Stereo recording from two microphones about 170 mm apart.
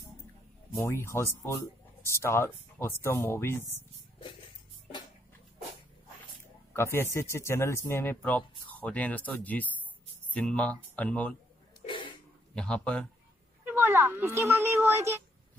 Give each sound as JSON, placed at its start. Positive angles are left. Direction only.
{"t": 0.7, "sound": "speech", "side_deg": 15}
{"t": 6.7, "sound": "speech", "side_deg": 15}
{"t": 11.8, "sound": "cough", "side_deg": 30}
{"t": 12.5, "sound": "speech", "side_deg": 5}
{"t": 13.7, "sound": "speech", "side_deg": -15}